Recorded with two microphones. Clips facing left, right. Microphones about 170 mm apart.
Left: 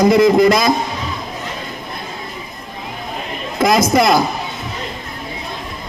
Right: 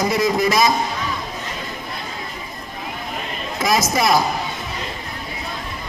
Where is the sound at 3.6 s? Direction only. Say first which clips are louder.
Left 6 dB; 55° left (ahead or behind).